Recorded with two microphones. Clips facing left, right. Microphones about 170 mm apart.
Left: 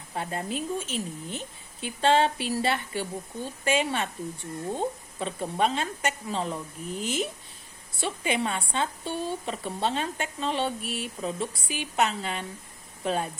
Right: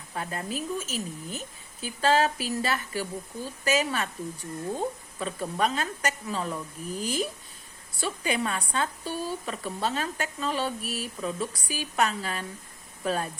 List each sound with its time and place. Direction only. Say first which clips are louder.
0.1 s speech: left 2 dB; 30° left (ahead or behind)
0.9 s a woman's voice: left 1 dB; 5° right (ahead or behind)
1.8 s speech: left 1 dB; 25° left (ahead or behind)